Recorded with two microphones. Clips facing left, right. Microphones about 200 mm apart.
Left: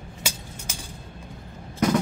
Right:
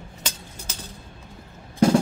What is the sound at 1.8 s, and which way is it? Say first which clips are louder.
Percussion: right 4 dB; 30° right (ahead or behind).